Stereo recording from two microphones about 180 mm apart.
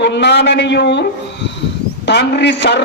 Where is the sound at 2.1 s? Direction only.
70° left (ahead or behind).